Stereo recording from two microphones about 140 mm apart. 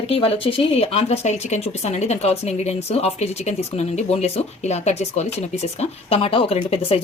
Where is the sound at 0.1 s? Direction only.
40° left (ahead or behind).